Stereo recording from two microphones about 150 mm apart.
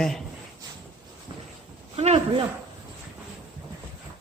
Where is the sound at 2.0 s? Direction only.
45° right (ahead or behind).